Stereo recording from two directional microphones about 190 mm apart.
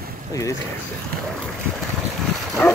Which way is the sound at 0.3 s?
15° left (ahead or behind).